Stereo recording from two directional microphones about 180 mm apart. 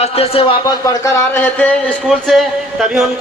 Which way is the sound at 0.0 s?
30° left (ahead or behind).